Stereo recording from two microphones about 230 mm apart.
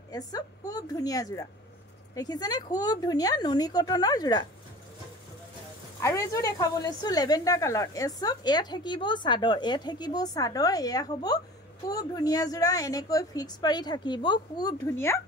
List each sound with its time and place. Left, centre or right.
0.1 s a woman's voice: centre
5.9 s a woman's voice: centre